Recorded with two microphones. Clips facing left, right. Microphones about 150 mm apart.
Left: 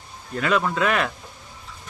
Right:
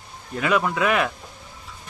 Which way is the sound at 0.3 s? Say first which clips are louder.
Even; 10° right (ahead or behind).